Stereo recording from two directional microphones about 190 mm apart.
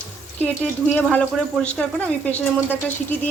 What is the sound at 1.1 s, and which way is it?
Speech, 5° left (ahead or behind).